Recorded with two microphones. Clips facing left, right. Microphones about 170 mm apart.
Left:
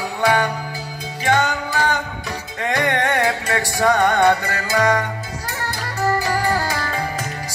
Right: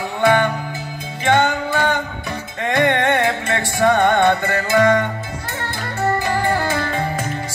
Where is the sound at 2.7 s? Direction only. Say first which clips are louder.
Right 3 dB; 25° right (ahead or behind).